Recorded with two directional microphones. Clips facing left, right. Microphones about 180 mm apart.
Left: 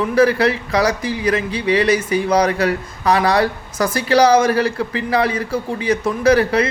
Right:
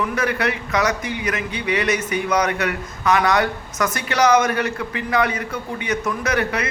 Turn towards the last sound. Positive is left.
turn(degrees=30)  # may be behind; listen again after turning